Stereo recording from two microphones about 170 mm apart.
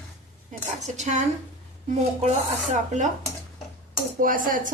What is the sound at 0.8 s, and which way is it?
A woman's voice, 45° right (ahead or behind).